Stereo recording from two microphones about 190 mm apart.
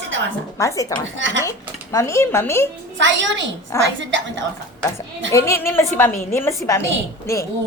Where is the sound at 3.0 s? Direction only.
75° right (ahead or behind).